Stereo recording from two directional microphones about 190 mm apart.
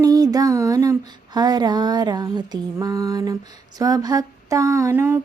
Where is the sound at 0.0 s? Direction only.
20° right (ahead or behind).